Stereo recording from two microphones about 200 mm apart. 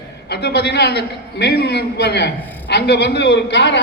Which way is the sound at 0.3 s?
55° left (ahead or behind).